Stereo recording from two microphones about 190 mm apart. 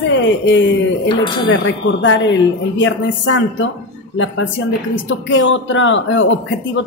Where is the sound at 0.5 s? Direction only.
70° left (ahead or behind).